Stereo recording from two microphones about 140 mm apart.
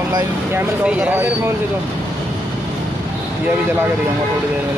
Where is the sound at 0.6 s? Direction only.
10° right (ahead or behind).